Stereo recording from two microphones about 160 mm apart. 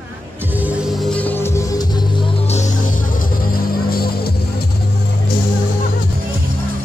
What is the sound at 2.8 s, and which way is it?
Music, 55° left (ahead or behind).